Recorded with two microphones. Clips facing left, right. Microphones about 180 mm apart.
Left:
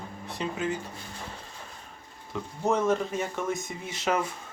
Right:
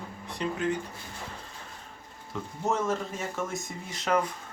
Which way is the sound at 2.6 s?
Centre (ahead or behind).